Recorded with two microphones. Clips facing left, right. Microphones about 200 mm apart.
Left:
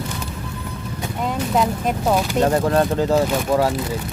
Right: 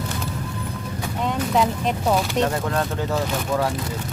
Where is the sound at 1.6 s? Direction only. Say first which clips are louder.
Left 2 dB; 5° left (ahead or behind).